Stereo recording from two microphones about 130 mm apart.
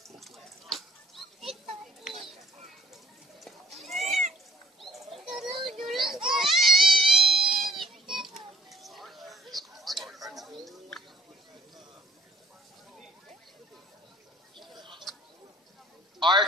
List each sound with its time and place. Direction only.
0.2 s water: centre (ahead or behind)
2.9 s goat: centre (ahead or behind)
5.7 s children playing: centre (ahead or behind)
6.3 s crying: centre (ahead or behind)
14.8 s bird: 35° right (ahead or behind)
16.2 s a sound: 35° right (ahead or behind)